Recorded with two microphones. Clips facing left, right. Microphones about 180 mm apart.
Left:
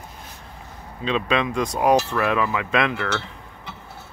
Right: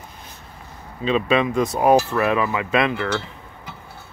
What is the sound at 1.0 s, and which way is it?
Speech, 5° right (ahead or behind).